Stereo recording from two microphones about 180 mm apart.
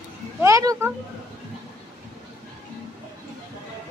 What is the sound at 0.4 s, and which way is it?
Speech, 15° right (ahead or behind).